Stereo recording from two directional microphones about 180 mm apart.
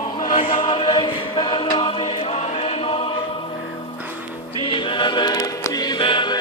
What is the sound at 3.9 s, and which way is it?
Music, 10° right (ahead or behind).